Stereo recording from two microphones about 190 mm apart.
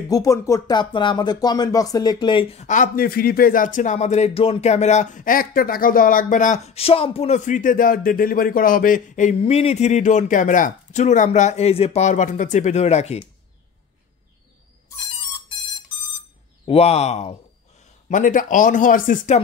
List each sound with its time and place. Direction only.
0.1 s speech: 15° left (ahead or behind); by 13.2 s 35° left (ahead or behind)
16.6 s speech: 30° left (ahead or behind)